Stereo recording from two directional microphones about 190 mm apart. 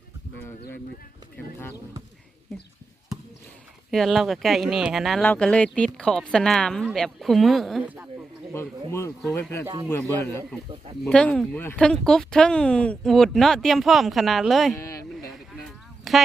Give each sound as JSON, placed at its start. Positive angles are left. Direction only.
{"t": 3.9, "sound": "speech", "side_deg": 0}
{"t": 8.5, "sound": "a man's voice", "side_deg": 15}
{"t": 14.8, "sound": "a sound", "side_deg": 15}
{"t": 16.1, "sound": "music", "side_deg": 0}